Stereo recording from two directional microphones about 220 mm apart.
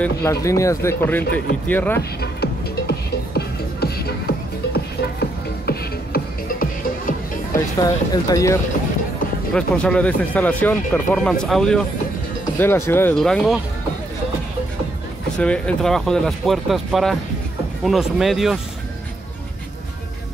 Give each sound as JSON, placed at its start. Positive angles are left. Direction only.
{"t": 0.0, "sound": "speech", "side_deg": 10}
{"t": 2.0, "sound": "music", "side_deg": 45}
{"t": 7.5, "sound": "speech", "side_deg": 15}
{"t": 9.5, "sound": "speech", "side_deg": 5}
{"t": 15.3, "sound": "speech", "side_deg": 5}